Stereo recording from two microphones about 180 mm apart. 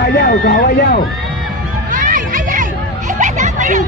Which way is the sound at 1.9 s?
45° right (ahead or behind).